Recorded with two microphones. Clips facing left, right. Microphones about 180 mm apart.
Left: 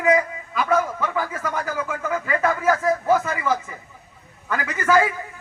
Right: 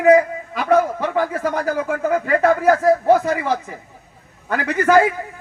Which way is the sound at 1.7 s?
50° right (ahead or behind).